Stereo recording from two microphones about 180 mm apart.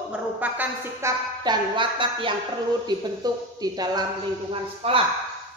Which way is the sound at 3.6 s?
20° right (ahead or behind).